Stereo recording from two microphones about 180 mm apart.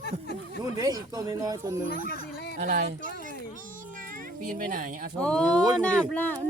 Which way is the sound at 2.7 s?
55° right (ahead or behind).